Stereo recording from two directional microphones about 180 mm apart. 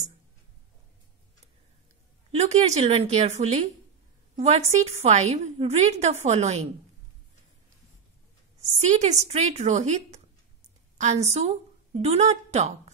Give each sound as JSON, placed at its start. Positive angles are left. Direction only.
{"t": 2.3, "sound": "a woman's voice", "side_deg": -40}
{"t": 8.5, "sound": "a woman's voice", "side_deg": -40}